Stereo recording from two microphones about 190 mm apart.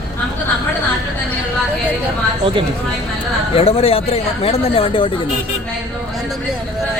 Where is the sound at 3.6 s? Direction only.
30° left (ahead or behind).